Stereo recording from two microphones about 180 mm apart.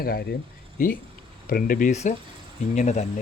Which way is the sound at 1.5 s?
55° left (ahead or behind).